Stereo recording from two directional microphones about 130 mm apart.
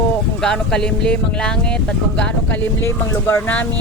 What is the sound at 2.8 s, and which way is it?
Speech, 20° left (ahead or behind).